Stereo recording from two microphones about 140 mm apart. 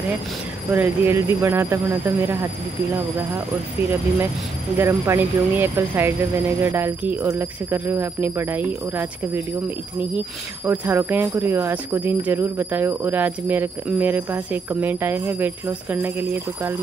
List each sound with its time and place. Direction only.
0.7 s speech: 20° right (ahead or behind)
4.7 s speech: 15° right (ahead or behind)